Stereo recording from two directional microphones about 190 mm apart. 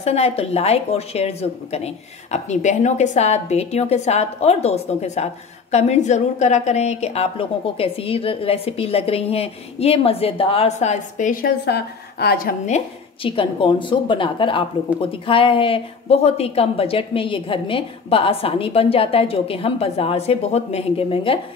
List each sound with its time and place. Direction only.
0.0 s a woman's voice: 35° left (ahead or behind)
11.6 s a woman's voice: 60° left (ahead or behind); by 21.4 s 30° left (ahead or behind)